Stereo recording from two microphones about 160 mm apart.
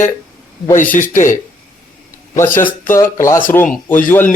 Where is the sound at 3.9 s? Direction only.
60° left (ahead or behind).